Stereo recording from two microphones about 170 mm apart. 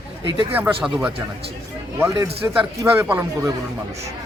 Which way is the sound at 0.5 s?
10° right (ahead or behind).